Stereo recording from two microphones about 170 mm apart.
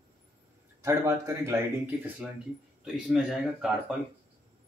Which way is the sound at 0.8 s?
20° right (ahead or behind).